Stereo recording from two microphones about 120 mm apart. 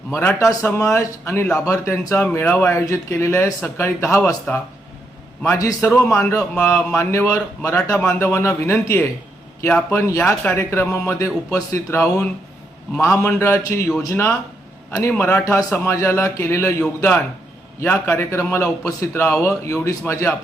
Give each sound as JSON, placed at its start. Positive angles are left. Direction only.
{"t": 0.1, "sound": "speech", "side_deg": 20}
{"t": 7.8, "sound": "a man's voice", "side_deg": 15}